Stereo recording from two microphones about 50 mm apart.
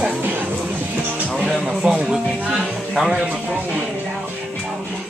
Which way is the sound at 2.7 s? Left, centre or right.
Centre.